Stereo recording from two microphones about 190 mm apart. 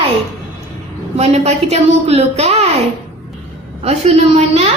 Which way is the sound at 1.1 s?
35° right (ahead or behind).